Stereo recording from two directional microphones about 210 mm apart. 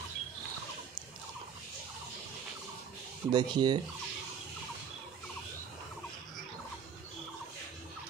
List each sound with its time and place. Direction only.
3.3 s speech: 20° right (ahead or behind)